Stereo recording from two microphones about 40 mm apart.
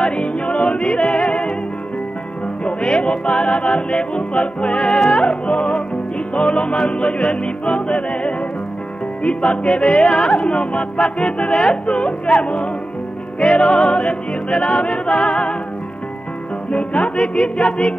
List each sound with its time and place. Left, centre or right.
0.0 s music: left
2.6 s music: left
16.7 s music: left